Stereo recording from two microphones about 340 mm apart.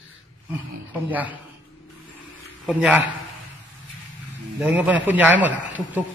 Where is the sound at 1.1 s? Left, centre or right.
Centre.